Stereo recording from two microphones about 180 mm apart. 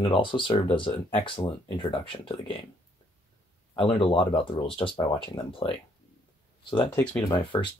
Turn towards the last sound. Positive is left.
turn(degrees=25)  # may be behind; listen again after turning